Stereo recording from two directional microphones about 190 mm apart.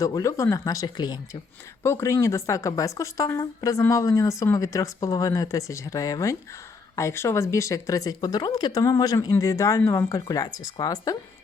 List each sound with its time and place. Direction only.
0.0 s speech: 15° left (ahead or behind)